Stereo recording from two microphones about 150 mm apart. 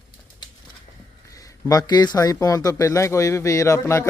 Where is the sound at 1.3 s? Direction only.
20° left (ahead or behind).